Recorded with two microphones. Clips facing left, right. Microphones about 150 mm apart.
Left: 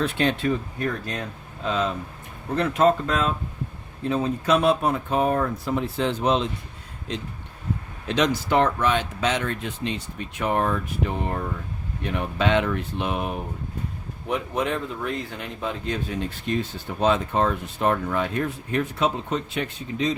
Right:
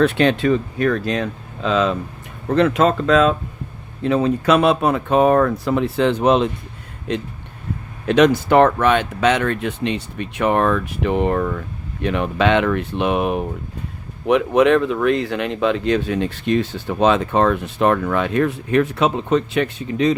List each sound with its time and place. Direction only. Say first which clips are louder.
0.0 s speech: right 7 dB; 75° right (ahead or behind); by 3.3 s 90° right
4.0 s speech: right 7 dB; 75° right (ahead or behind)